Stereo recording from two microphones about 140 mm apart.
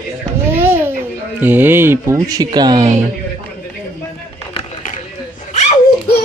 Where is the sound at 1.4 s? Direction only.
15° right (ahead or behind); by 2.9 s 30° right (ahead or behind).